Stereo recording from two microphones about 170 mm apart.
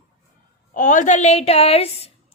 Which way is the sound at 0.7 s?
50° left (ahead or behind).